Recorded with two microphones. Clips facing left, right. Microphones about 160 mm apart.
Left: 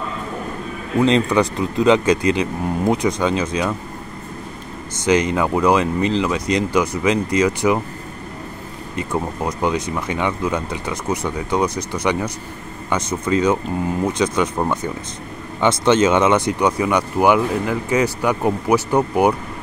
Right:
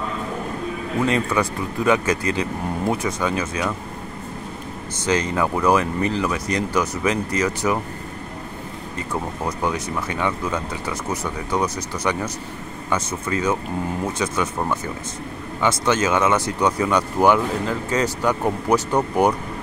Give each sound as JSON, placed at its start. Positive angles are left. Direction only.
{"t": 1.0, "sound": "speech", "side_deg": 20}
{"t": 5.0, "sound": "speech", "side_deg": 15}
{"t": 8.9, "sound": "speech", "side_deg": 15}